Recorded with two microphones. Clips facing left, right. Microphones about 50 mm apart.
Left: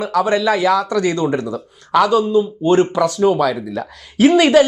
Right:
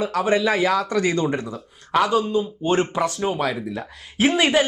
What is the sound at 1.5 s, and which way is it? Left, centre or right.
Speech, left.